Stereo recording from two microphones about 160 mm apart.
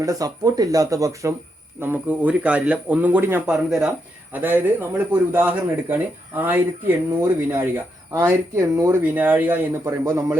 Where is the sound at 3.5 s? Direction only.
Centre (ahead or behind).